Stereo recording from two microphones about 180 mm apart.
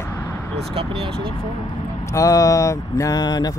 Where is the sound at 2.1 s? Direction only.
20° left (ahead or behind).